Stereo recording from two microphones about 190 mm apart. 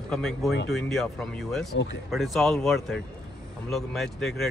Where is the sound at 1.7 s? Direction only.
70° left (ahead or behind).